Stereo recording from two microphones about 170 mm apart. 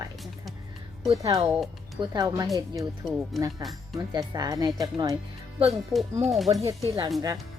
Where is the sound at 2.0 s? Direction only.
20° right (ahead or behind).